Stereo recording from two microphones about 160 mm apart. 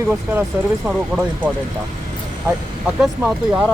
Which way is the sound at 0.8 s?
5° right (ahead or behind).